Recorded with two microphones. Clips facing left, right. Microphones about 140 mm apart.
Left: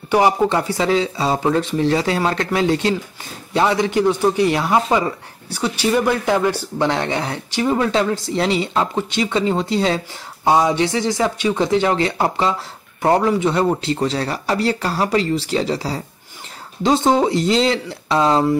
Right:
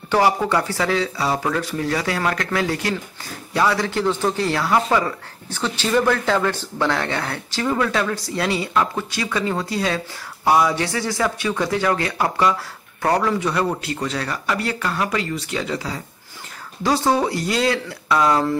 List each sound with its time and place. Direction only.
0.1 s speech: 20° left (ahead or behind)
16.8 s speech: 20° left (ahead or behind)